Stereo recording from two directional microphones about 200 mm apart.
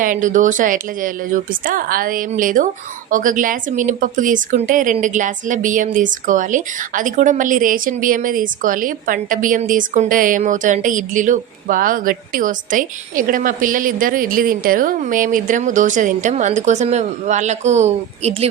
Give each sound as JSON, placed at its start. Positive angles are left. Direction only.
{"t": 0.0, "sound": "a woman's voice", "side_deg": -40}